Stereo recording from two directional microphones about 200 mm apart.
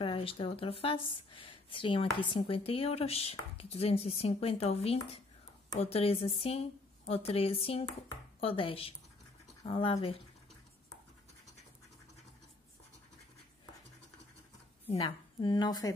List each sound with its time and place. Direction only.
0.0 s speech: 25° left (ahead or behind)
14.9 s speech: 30° left (ahead or behind)